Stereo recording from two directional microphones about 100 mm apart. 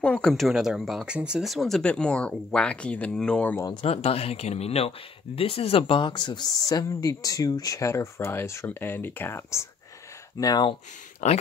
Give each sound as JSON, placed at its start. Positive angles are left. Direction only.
{"t": 0.0, "sound": "speech", "side_deg": 10}
{"t": 3.8, "sound": "speech", "side_deg": 90}
{"t": 10.4, "sound": "speech", "side_deg": 40}
{"t": 10.7, "sound": "speech", "side_deg": 90}